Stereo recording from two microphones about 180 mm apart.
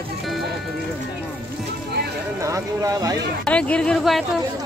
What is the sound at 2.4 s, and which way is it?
Speech, 20° right (ahead or behind).